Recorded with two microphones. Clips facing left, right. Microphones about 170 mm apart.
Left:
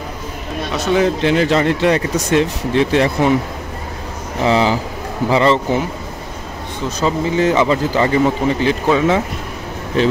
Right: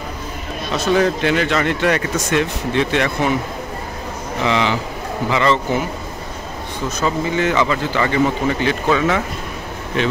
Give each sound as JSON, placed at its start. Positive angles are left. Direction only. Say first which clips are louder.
{"t": 0.7, "sound": "speech", "louder": "left 1 dB", "side_deg": 20}
{"t": 4.4, "sound": "speech", "louder": "left 4 dB", "side_deg": 35}
{"t": 7.0, "sound": "speech", "louder": "left 3 dB", "side_deg": 30}